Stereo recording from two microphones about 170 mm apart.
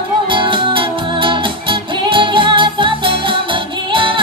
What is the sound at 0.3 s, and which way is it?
Music, 30° right (ahead or behind).